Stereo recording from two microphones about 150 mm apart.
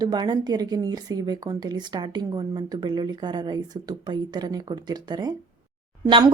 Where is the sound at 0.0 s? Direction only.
30° right (ahead or behind).